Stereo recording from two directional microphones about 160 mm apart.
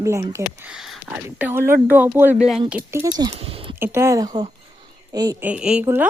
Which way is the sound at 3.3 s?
35° right (ahead or behind).